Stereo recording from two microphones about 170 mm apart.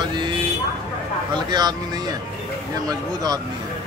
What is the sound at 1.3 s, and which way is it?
Speech, 25° right (ahead or behind).